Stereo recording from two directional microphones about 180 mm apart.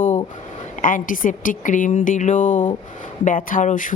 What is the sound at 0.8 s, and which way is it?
Speech, 50° left (ahead or behind).